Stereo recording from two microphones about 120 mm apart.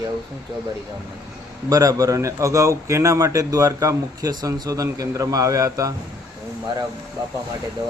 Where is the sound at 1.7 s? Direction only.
30° right (ahead or behind).